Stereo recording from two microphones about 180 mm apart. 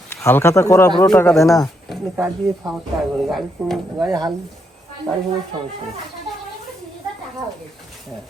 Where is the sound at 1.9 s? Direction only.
10° right (ahead or behind).